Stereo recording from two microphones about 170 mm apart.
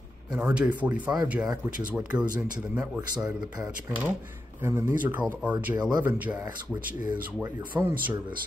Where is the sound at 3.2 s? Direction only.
5° right (ahead or behind).